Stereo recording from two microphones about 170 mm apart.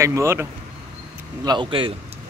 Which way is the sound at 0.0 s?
15° right (ahead or behind).